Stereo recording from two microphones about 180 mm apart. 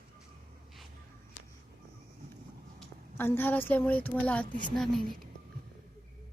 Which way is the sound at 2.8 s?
10° left (ahead or behind).